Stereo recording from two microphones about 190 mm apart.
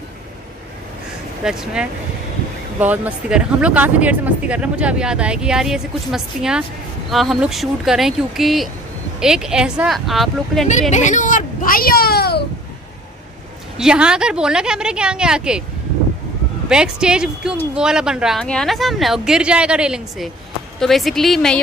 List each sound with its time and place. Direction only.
1.4 s speech: 5° right (ahead or behind)
10.7 s speech: 40° left (ahead or behind); by 12.4 s 55° left (ahead or behind)
13.7 s speech: 5° right (ahead or behind)
16.6 s speech: 5° right (ahead or behind)